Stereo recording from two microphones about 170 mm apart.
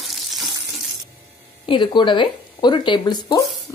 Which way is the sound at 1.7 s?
25° left (ahead or behind).